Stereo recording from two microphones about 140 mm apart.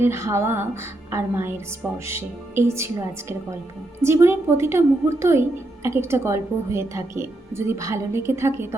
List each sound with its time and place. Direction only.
0.0 s a woman's voice: 20° right (ahead or behind)